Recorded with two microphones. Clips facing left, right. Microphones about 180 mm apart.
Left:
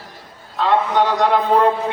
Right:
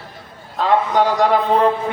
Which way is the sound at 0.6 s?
45° right (ahead or behind).